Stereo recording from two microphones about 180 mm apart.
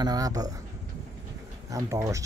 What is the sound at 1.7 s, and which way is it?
Speech, 15° right (ahead or behind).